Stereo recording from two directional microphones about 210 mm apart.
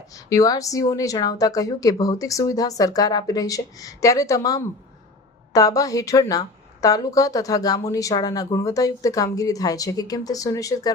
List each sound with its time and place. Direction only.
0.1 s a woman's voice: 15° left (ahead or behind)